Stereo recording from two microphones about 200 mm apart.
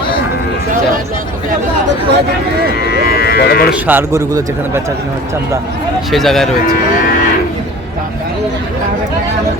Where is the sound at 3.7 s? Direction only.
10° right (ahead or behind).